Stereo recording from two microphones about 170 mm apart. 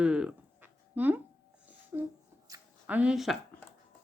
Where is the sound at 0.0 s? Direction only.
5° right (ahead or behind).